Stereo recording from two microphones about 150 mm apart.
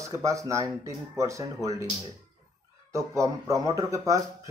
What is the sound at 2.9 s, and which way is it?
Speech, 20° right (ahead or behind).